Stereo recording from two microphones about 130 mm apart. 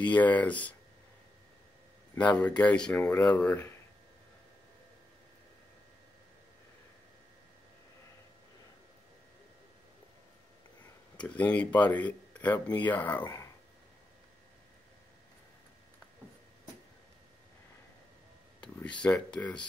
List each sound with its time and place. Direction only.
0.0 s speech: 10° left (ahead or behind)
2.1 s speech: 10° left (ahead or behind)
11.1 s speech: 10° left (ahead or behind)
13.2 s speech: 25° left (ahead or behind)
18.8 s speech: 10° left (ahead or behind)